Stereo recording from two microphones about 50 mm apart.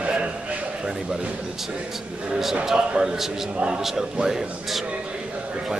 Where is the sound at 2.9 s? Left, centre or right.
Centre.